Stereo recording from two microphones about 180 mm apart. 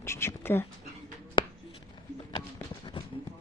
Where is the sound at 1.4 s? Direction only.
25° left (ahead or behind).